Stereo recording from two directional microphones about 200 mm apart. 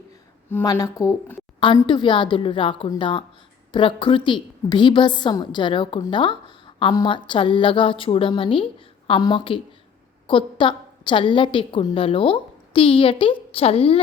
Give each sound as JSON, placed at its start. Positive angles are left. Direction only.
{"t": 0.5, "sound": "a woman's voice", "side_deg": 15}